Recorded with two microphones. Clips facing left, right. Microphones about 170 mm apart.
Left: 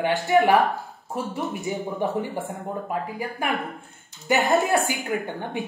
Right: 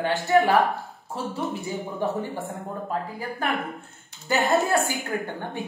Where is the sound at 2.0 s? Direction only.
15° left (ahead or behind).